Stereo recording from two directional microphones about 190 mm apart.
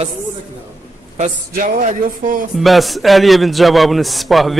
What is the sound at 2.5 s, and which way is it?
A man's voice, centre (ahead or behind).